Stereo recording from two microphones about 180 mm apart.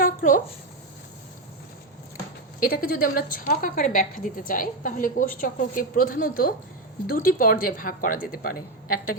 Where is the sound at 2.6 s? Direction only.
55° left (ahead or behind).